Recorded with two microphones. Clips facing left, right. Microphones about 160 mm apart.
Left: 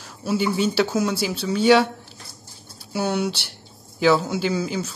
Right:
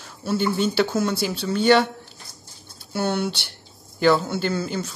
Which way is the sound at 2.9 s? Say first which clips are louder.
Left 1 dB; 5° left (ahead or behind).